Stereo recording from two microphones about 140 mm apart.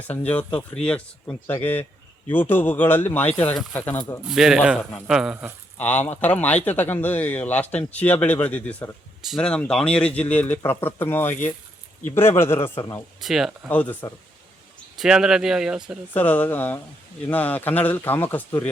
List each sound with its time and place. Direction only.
0.3 s speech: 10° left (ahead or behind)
4.2 s speech: 5° right (ahead or behind)
4.8 s speech: 10° left (ahead or behind)
5.0 s speech: 5° right (ahead or behind)
5.7 s speech: 10° left (ahead or behind)
13.2 s speech: centre (ahead or behind)
13.7 s speech: 10° left (ahead or behind)
14.9 s speech: 5° right (ahead or behind)
16.1 s speech: 10° left (ahead or behind)